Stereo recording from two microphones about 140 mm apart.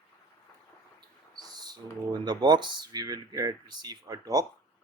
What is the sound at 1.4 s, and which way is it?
Speech, 30° right (ahead or behind).